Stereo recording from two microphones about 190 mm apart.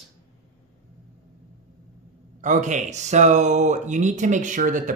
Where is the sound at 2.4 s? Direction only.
40° right (ahead or behind).